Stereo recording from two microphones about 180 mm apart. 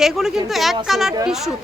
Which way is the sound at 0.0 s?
Centre (ahead or behind).